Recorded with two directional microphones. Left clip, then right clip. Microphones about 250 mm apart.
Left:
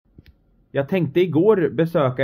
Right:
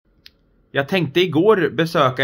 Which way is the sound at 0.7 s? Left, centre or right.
Centre.